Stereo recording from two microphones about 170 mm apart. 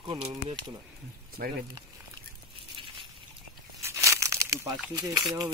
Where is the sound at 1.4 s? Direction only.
70° right (ahead or behind).